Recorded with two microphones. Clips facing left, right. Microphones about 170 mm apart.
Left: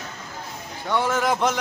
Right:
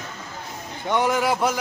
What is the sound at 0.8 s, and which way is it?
Speech, 20° right (ahead or behind).